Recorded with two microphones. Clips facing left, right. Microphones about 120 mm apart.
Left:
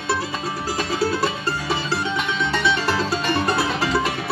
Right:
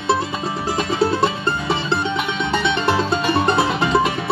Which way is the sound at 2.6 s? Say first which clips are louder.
Right 3 dB; 20° right (ahead or behind).